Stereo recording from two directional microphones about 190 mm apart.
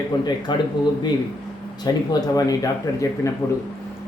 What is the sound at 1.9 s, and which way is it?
A man's voice, 20° left (ahead or behind).